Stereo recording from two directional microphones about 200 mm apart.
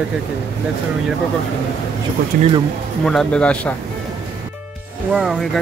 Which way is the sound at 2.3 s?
45° right (ahead or behind).